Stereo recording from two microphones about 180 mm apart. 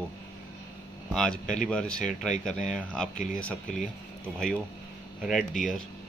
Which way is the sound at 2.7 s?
5° left (ahead or behind).